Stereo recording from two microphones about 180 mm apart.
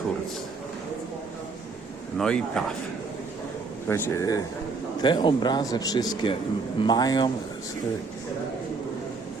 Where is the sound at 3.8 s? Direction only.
15° left (ahead or behind).